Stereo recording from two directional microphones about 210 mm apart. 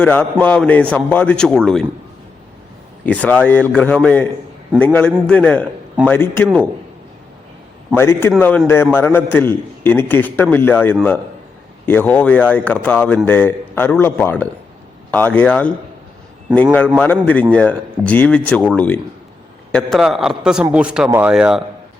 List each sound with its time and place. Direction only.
0.0 s a man's voice: 5° left (ahead or behind)
3.1 s a man's voice: 5° left (ahead or behind)
7.9 s a man's voice: 10° left (ahead or behind)
17.0 s a man's voice: 5° left (ahead or behind)